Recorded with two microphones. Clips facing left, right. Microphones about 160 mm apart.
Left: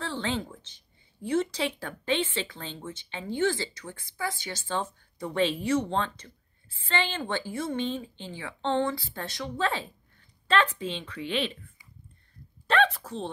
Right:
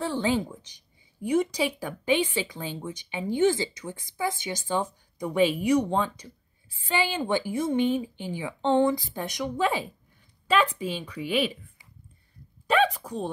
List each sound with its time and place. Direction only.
0.0 s speech: 15° right (ahead or behind)
12.6 s speech: 10° right (ahead or behind)